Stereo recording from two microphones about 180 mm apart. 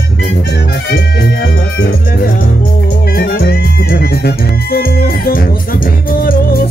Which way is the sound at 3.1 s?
55° left (ahead or behind).